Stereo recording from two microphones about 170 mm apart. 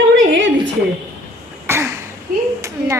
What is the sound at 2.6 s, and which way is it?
Speech, 15° right (ahead or behind).